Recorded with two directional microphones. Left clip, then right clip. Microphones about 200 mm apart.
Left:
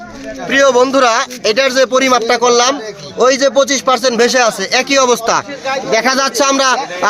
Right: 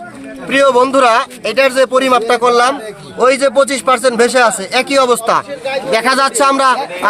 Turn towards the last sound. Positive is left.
turn(degrees=25)  # may be behind; listen again after turning